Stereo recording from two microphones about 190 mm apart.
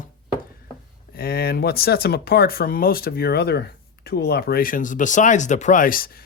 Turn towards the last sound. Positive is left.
turn(degrees=50)  # may be behind; listen again after turning